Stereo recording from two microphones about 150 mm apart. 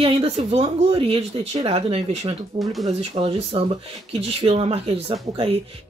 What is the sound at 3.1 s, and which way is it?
Speech, 40° right (ahead or behind).